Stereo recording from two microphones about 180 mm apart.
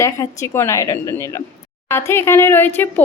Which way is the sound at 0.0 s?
15° left (ahead or behind).